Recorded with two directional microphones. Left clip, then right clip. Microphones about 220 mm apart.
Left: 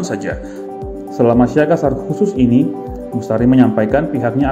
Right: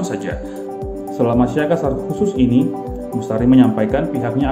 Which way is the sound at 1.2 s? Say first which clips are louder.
Left 5 dB; 15° left (ahead or behind).